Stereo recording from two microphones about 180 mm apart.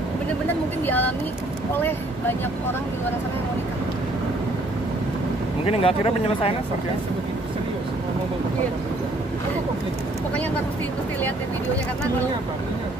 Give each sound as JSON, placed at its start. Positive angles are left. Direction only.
{"t": 0.8, "sound": "speech", "side_deg": 10}
{"t": 5.7, "sound": "speech", "side_deg": 30}